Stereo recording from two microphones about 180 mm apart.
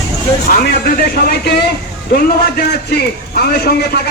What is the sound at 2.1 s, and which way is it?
A man's voice, 60° left (ahead or behind).